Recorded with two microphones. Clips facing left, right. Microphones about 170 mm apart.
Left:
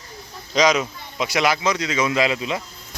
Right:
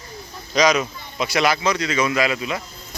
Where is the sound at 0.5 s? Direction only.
25° left (ahead or behind).